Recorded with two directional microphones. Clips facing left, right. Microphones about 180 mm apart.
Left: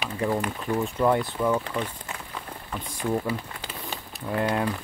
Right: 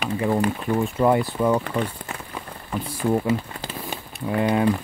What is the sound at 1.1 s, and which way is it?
Speech, 10° right (ahead or behind).